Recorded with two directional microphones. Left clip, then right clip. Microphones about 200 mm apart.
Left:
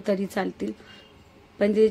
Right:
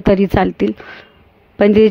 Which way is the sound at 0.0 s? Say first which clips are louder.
Right 13 dB; 40° right (ahead or behind).